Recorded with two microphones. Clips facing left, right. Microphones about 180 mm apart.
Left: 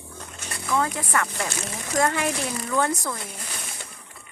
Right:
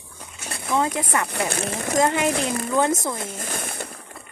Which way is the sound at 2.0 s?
20° right (ahead or behind).